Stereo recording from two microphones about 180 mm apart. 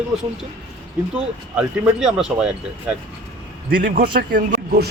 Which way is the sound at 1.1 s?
5° right (ahead or behind).